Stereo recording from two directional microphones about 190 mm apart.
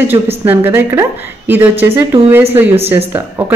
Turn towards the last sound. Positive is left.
turn(degrees=-10)  # may be behind; listen again after turning